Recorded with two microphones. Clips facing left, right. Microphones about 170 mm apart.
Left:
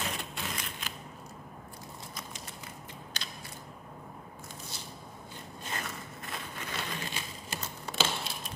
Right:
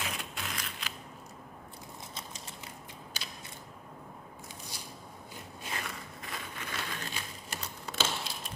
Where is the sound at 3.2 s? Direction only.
5° right (ahead or behind).